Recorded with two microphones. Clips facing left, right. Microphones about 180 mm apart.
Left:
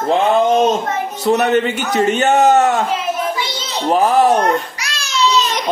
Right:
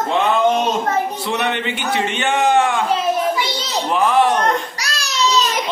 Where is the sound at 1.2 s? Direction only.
40° left (ahead or behind).